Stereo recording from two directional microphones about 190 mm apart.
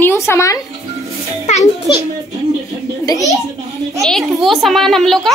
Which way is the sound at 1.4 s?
35° left (ahead or behind).